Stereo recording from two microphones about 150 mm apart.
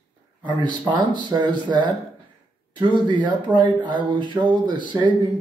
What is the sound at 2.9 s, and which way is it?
Speech, 30° right (ahead or behind).